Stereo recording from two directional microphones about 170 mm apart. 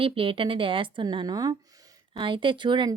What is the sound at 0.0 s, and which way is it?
Speech, 30° right (ahead or behind).